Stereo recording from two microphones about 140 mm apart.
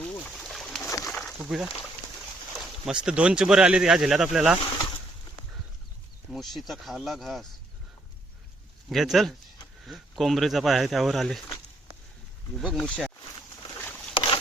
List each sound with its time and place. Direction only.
0.0 s a sound: 5° left (ahead or behind)
1.5 s speech: 5° right (ahead or behind)
6.3 s speech: centre (ahead or behind)
8.9 s speech: centre (ahead or behind)
12.5 s speech: centre (ahead or behind)
13.7 s boat: 15° left (ahead or behind)
14.1 s boat: 35° left (ahead or behind)